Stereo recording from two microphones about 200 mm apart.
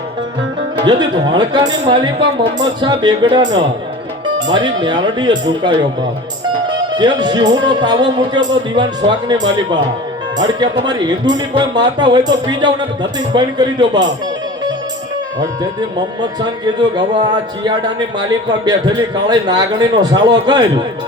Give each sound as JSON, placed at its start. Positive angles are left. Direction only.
{"t": 0.8, "sound": "a man's voice", "side_deg": -20}
{"t": 4.4, "sound": "music", "side_deg": -20}
{"t": 4.8, "sound": "a man's voice", "side_deg": -20}
{"t": 16.0, "sound": "a man's voice", "side_deg": -20}